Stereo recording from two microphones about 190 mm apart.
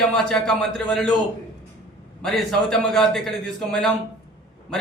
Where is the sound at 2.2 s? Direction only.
Centre (ahead or behind).